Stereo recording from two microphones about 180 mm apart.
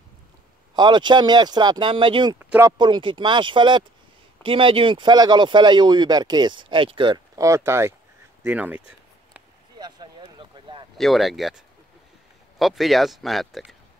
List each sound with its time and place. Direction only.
0.7 s speech: 25° right (ahead or behind)
2.3 s speech: 10° right (ahead or behind)
2.8 s speech: 25° right (ahead or behind); by 8.8 s 10° right (ahead or behind)
9.8 s a sound: 25° right (ahead or behind)
11.0 s speech: centre (ahead or behind)